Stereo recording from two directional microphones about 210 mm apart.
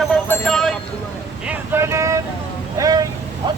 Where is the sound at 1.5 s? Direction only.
10° right (ahead or behind).